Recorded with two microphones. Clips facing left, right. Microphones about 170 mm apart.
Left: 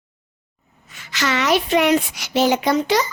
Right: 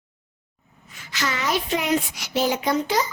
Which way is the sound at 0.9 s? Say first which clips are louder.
Left 5 dB; 80° left.